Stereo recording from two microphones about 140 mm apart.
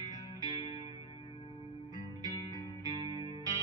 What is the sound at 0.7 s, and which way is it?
Music, 30° right (ahead or behind).